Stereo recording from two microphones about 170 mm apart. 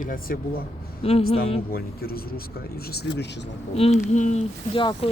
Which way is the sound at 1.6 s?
60° left (ahead or behind).